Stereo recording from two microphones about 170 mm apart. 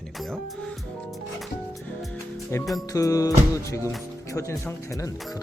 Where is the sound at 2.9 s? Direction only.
20° left (ahead or behind).